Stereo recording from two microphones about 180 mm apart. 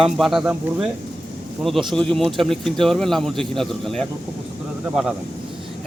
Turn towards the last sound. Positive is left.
turn(degrees=-5)  # may be behind; listen again after turning